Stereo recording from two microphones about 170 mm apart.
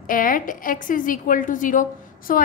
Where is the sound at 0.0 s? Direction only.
55° left (ahead or behind).